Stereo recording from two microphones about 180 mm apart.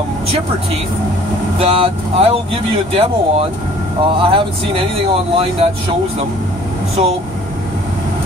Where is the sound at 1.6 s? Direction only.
35° right (ahead or behind).